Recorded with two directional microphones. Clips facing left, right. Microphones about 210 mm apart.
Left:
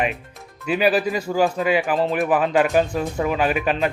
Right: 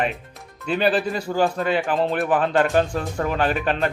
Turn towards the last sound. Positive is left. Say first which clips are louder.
# left 1 dB
turn(degrees=10)  # may be behind; listen again after turning